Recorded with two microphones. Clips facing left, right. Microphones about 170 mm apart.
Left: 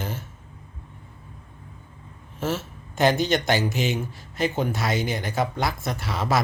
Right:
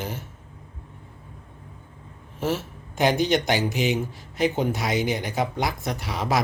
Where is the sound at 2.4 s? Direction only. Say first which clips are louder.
Right 1 dB; 15° right (ahead or behind).